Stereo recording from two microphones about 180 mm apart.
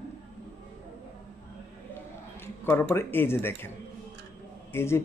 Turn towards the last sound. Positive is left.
turn(degrees=15)  # may be behind; listen again after turning